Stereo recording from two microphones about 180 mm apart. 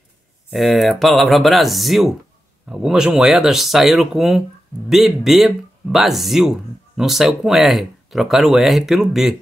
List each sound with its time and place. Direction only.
0.5 s speech: centre (ahead or behind)